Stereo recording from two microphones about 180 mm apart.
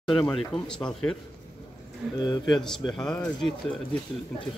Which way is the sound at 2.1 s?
25° left (ahead or behind).